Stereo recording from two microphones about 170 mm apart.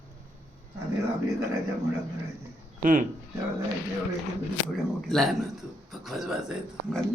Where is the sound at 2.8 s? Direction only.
50° right (ahead or behind).